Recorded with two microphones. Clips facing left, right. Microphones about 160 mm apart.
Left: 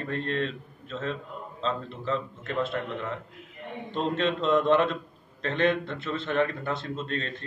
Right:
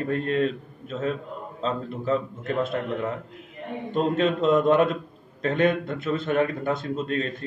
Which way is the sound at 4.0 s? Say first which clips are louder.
Right 5 dB; 10° right (ahead or behind).